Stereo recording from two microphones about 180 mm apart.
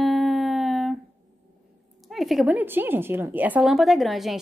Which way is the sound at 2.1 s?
Centre (ahead or behind).